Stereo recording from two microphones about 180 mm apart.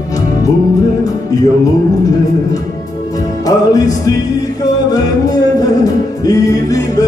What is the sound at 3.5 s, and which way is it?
Music, 20° left (ahead or behind).